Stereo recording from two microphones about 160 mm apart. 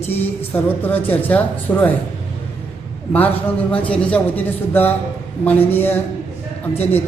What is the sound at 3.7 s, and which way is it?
Speech, 10° left (ahead or behind).